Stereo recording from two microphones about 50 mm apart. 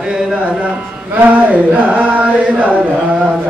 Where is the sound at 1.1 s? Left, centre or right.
Right.